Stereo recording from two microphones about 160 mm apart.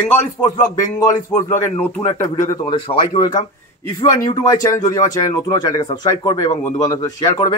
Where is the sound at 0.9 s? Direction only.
15° left (ahead or behind).